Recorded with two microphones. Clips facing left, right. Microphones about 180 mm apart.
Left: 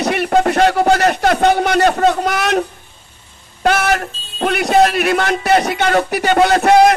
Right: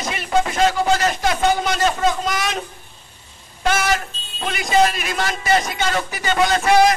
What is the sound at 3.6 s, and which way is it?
Speech, 60° left (ahead or behind).